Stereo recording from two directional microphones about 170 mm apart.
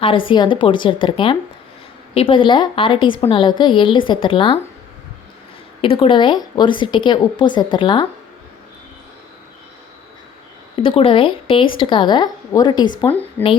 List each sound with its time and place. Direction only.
0.3 s a woman's voice: 25° left (ahead or behind)
5.8 s a woman's voice: 30° left (ahead or behind)
10.8 s a woman's voice: 30° left (ahead or behind)
13.4 s speech: 10° left (ahead or behind)